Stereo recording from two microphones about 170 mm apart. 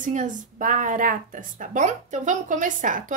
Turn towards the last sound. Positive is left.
turn(degrees=-50)  # may be behind; listen again after turning